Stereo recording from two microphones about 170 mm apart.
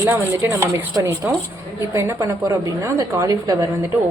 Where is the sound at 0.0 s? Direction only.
15° right (ahead or behind).